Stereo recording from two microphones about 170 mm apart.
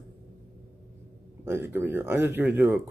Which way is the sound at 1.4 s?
15° right (ahead or behind).